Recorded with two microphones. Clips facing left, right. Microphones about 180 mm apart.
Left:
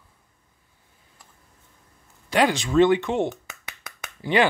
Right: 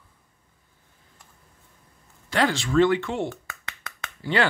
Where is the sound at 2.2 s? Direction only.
15° left (ahead or behind).